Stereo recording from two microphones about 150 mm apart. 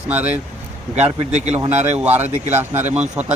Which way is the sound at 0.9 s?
45° right (ahead or behind).